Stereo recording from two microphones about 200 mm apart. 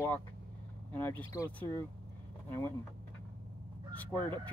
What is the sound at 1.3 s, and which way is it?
Speech, 15° left (ahead or behind).